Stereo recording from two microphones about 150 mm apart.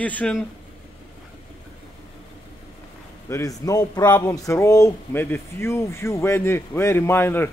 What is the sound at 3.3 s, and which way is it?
A man's voice, 20° left (ahead or behind).